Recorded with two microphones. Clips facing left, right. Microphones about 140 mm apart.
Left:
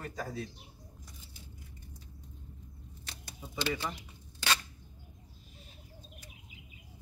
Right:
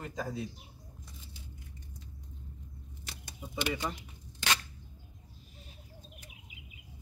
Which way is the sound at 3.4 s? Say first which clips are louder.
Even; 15° right (ahead or behind).